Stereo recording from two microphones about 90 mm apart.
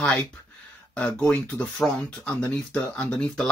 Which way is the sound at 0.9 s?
15° left (ahead or behind).